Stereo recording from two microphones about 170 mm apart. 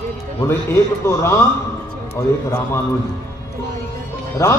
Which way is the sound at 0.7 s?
15° left (ahead or behind).